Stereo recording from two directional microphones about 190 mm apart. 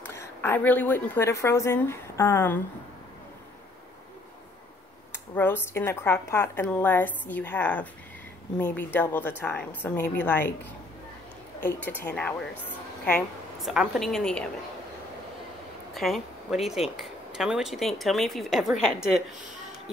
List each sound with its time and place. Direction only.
0.0 s a woman's voice: 10° left (ahead or behind)
5.1 s speech: 10° left (ahead or behind)
12.0 s speech: 10° left (ahead or behind)
13.7 s speech: centre (ahead or behind)
15.9 s speech: centre (ahead or behind)